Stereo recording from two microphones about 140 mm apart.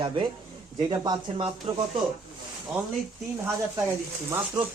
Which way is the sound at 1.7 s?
45° right (ahead or behind).